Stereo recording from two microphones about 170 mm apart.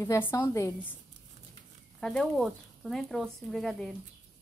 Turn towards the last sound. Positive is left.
turn(degrees=0)  # may be behind; listen again after turning